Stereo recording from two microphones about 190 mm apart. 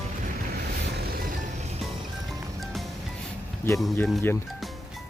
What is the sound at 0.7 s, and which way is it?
Music, 55° right (ahead or behind).